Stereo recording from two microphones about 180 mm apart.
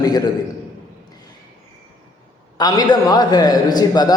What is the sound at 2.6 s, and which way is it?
A man's voice, 20° left (ahead or behind).